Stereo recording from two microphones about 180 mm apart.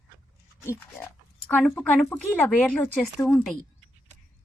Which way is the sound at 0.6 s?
15° left (ahead or behind).